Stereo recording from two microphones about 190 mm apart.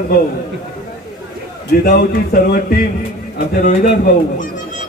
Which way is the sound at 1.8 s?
50° left (ahead or behind).